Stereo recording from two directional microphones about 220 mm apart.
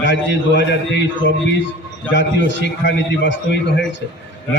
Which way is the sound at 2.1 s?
55° left (ahead or behind).